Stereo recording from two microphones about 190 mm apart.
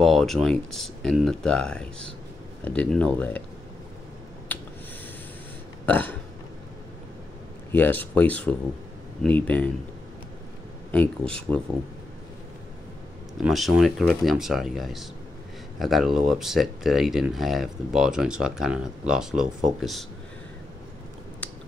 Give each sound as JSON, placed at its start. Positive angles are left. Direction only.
{"t": 0.0, "sound": "speech", "side_deg": 0}
{"t": 5.9, "sound": "burping", "side_deg": 10}
{"t": 7.7, "sound": "speech", "side_deg": 10}
{"t": 10.9, "sound": "speech", "side_deg": 5}
{"t": 13.3, "sound": "speech", "side_deg": 0}